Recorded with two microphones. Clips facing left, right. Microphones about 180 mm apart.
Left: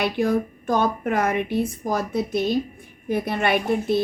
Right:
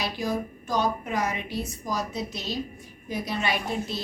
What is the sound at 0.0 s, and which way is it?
A woman's voice, 60° left (ahead or behind).